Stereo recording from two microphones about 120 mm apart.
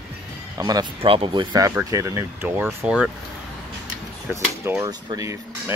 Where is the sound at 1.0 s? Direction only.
50° right (ahead or behind).